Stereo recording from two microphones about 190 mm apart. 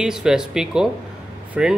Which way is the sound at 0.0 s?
5° right (ahead or behind).